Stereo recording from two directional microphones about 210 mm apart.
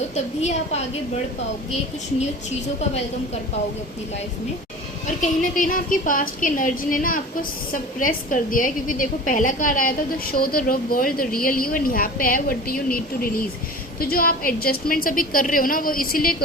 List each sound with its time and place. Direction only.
5.4 s a woman's voice: 40° left (ahead or behind)